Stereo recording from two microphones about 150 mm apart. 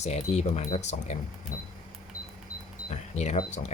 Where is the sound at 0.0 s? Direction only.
50° left (ahead or behind).